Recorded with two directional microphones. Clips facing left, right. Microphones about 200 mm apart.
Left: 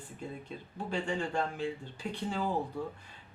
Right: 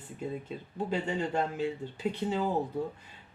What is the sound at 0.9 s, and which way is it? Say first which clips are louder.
Speech: right 2 dB; 20° right (ahead or behind).